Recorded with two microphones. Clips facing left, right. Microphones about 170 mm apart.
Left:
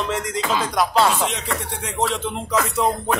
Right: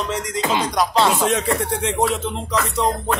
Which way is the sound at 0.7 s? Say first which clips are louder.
Even; 5° left (ahead or behind).